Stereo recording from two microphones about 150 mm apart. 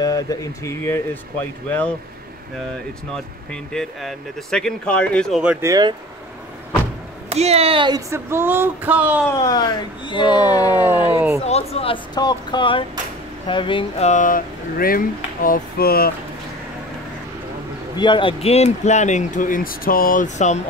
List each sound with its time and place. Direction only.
0.0 s speech: 25° left (ahead or behind)
3.7 s speech: 5° left (ahead or behind)
5.4 s speech: 10° right (ahead or behind)
5.7 s speech: 30° right (ahead or behind)
7.2 s speech: 45° right (ahead or behind)
8.1 s speech: 15° right (ahead or behind)
9.4 s speech: 25° left (ahead or behind)
11.1 s speech: 15° right (ahead or behind)
11.4 s speech: 45° left (ahead or behind)
12.2 s speech: 30° left (ahead or behind)
14.0 s speech: 60° left (ahead or behind); by 16.1 s 85° left
17.9 s speech: 30° left (ahead or behind); by 20.6 s 50° left (ahead or behind)